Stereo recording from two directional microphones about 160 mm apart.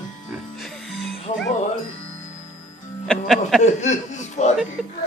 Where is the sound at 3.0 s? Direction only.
Centre (ahead or behind).